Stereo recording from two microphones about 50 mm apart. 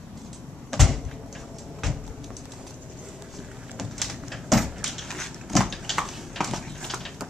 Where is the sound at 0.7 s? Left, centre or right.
Centre.